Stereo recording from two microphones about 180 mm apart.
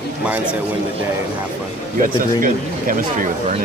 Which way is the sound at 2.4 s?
50° right (ahead or behind).